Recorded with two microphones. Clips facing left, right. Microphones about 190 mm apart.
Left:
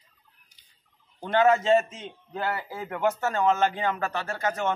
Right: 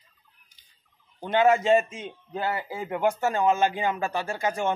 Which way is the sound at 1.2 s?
10° right (ahead or behind).